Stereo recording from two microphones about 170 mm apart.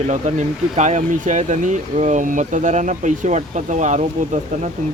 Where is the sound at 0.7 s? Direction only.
45° right (ahead or behind).